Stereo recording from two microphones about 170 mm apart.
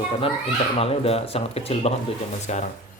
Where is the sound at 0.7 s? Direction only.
35° left (ahead or behind).